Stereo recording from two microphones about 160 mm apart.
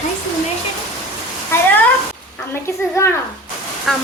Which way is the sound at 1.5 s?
15° left (ahead or behind).